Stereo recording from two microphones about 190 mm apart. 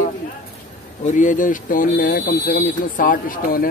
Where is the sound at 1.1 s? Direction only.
40° left (ahead or behind).